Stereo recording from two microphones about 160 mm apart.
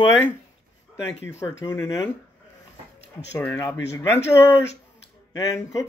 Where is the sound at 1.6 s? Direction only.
20° left (ahead or behind).